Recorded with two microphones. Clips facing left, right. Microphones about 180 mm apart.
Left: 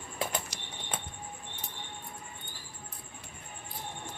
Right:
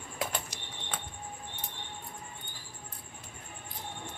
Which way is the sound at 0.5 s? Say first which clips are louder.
Even; 75° left (ahead or behind).